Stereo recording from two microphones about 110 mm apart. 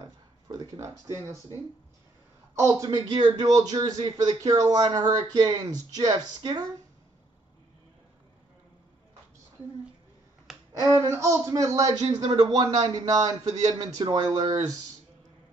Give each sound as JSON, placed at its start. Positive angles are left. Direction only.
{"t": 0.0, "sound": "speech", "side_deg": -35}
{"t": 2.5, "sound": "a man's voice", "side_deg": -25}
{"t": 2.9, "sound": "speech", "side_deg": -40}
{"t": 10.8, "sound": "speech", "side_deg": -25}